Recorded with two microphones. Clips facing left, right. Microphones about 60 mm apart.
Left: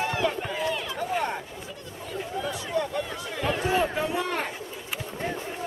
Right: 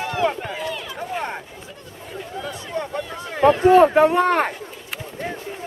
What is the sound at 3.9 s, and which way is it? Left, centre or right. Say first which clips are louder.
Speech: right 12 dB; right.